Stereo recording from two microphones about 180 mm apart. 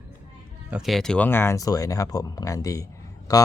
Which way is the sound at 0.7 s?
Centre (ahead or behind).